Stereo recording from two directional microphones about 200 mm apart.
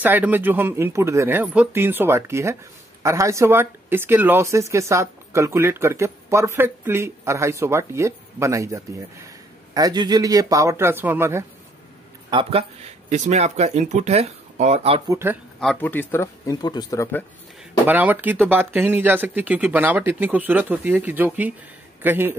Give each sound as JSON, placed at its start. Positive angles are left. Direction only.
{"t": 0.0, "sound": "speech", "side_deg": -10}
{"t": 12.3, "sound": "speech", "side_deg": -25}
{"t": 15.0, "sound": "speech", "side_deg": -15}
{"t": 15.6, "sound": "speech", "side_deg": 5}
{"t": 17.8, "sound": "speech", "side_deg": -10}